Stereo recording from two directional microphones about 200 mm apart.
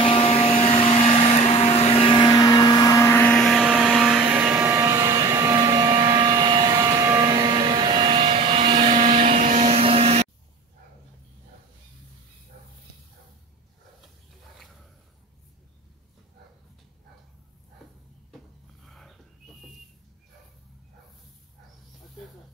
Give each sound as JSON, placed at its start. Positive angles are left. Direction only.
{"t": 0.0, "sound": "vacuum cleaner", "side_deg": 30}
{"t": 18.9, "sound": "dog", "side_deg": 0}